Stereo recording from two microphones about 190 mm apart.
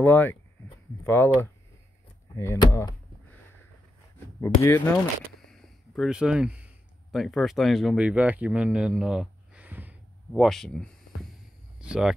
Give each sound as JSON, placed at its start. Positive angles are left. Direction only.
{"t": 0.0, "sound": "speech", "side_deg": 10}
{"t": 4.4, "sound": "speech", "side_deg": 15}
{"t": 5.5, "sound": "speech", "side_deg": 0}